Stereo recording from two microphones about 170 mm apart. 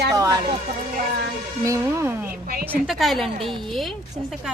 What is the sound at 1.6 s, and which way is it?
Speech, 15° right (ahead or behind).